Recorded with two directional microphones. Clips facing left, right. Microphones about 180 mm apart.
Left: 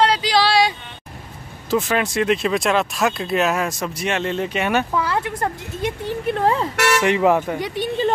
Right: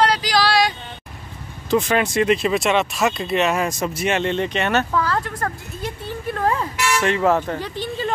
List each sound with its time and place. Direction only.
0.0 s a sound: 25° left (ahead or behind)
1.7 s speech: centre (ahead or behind); by 6.7 s 25° left (ahead or behind)
7.0 s speech: 15° left (ahead or behind)